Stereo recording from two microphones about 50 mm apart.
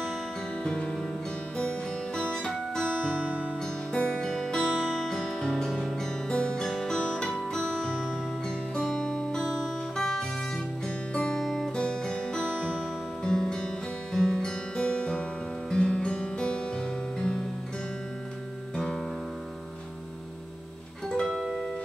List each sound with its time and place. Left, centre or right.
0.7 s music: centre
2.9 s music: right
3.9 s music: centre
4.6 s music: centre
4.9 s music: centre
9.6 s guitar: centre
11.3 s music: centre
11.7 s music: centre
12.4 s music: right
13.2 s music: centre
21.1 s music: centre